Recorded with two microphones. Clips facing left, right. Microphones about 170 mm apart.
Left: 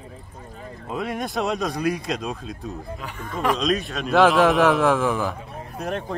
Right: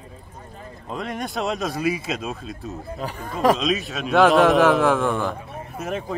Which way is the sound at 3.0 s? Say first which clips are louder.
Right 4 dB; 35° right (ahead or behind).